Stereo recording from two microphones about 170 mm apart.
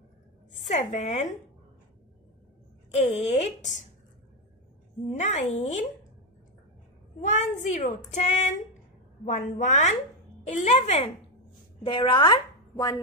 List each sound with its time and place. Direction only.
0.7 s a woman's voice: 45° left (ahead or behind)
2.9 s a woman's voice: 45° left (ahead or behind)
5.1 s a woman's voice: 45° left (ahead or behind)
7.2 s a woman's voice: 45° left (ahead or behind); by 12.9 s 20° left (ahead or behind)